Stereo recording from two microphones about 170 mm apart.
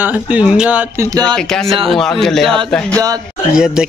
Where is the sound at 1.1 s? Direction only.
25° right (ahead or behind).